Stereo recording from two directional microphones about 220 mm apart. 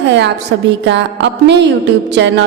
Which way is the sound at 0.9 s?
50° right (ahead or behind).